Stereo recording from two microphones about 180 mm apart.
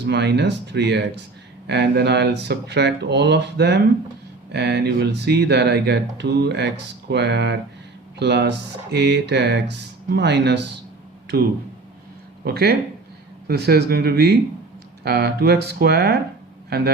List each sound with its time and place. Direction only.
0.0 s speech: 70° right (ahead or behind)
12.5 s a man's voice: 60° right (ahead or behind)